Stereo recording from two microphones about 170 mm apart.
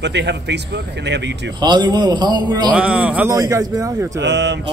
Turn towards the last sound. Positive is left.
turn(degrees=-90)